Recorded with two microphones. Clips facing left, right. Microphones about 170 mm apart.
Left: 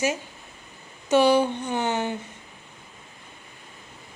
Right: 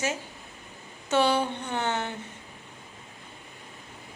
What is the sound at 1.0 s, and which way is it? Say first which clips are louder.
A woman's voice: left 5 dB; 15° left (ahead or behind).